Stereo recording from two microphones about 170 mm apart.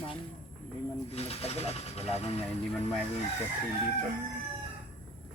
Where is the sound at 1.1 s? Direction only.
35° left (ahead or behind).